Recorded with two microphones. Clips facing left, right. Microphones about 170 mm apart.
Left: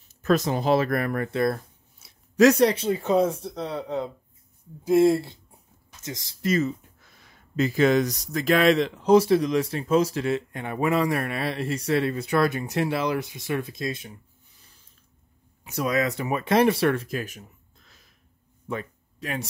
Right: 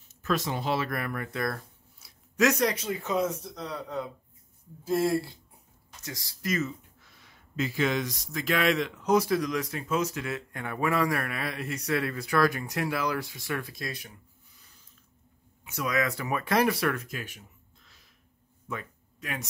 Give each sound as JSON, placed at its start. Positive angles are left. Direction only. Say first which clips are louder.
{"t": 0.2, "sound": "speech", "louder": "left 7 dB", "side_deg": 40}
{"t": 1.3, "sound": "speech", "louder": "left 8 dB", "side_deg": 25}
{"t": 7.0, "sound": "speech", "louder": "left 2 dB", "side_deg": 40}
{"t": 15.6, "sound": "speech", "louder": "left 4 dB", "side_deg": 35}
{"t": 18.7, "sound": "a sound", "louder": "left 6 dB", "side_deg": 30}